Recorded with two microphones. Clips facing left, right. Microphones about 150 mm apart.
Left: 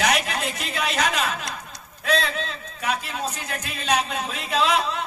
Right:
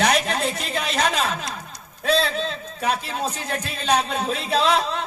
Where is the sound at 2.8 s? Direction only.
30° right (ahead or behind).